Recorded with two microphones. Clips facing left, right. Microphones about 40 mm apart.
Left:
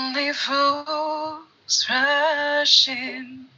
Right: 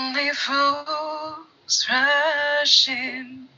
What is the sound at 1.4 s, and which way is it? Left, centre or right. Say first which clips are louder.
Female singing: even; centre.